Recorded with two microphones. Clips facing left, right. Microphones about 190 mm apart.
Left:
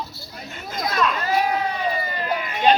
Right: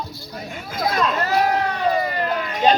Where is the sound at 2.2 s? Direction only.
5° left (ahead or behind).